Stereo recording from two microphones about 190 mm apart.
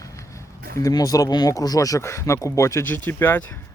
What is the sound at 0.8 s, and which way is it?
Speech, 20° left (ahead or behind).